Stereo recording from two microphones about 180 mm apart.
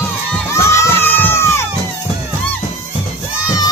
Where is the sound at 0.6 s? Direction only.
10° left (ahead or behind).